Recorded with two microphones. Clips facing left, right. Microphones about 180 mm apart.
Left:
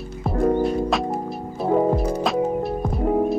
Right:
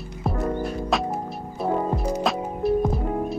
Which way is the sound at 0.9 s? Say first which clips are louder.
Left 2 dB; centre (ahead or behind).